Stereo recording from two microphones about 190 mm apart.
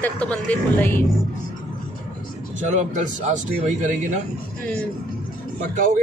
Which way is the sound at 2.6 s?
40° right (ahead or behind).